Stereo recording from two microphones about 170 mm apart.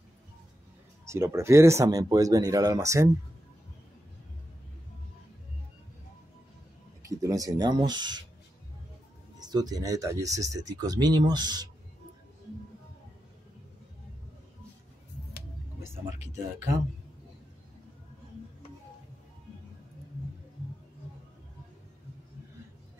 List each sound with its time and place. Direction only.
1.0 s speech: 15° right (ahead or behind)
7.1 s speech: 20° right (ahead or behind)
9.4 s speech: 25° right (ahead or behind)